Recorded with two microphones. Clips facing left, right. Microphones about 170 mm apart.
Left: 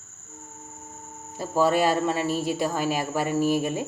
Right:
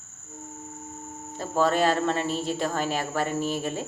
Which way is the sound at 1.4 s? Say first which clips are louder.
Left 1 dB; 10° left (ahead or behind).